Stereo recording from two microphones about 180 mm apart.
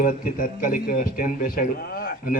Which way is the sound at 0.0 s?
50° left (ahead or behind).